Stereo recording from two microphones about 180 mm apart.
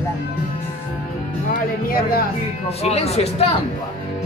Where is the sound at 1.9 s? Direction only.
55° left (ahead or behind).